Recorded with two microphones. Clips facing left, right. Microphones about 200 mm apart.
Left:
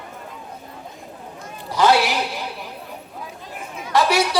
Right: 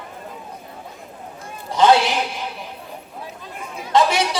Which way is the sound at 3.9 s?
25° right (ahead or behind).